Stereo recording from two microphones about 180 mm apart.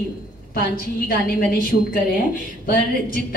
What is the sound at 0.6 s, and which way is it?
A woman's voice, 55° left (ahead or behind).